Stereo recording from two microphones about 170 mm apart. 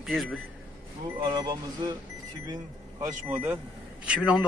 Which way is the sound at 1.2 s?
25° right (ahead or behind).